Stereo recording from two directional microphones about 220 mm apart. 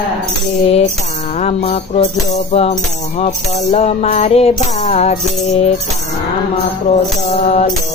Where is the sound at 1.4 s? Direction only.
30° left (ahead or behind).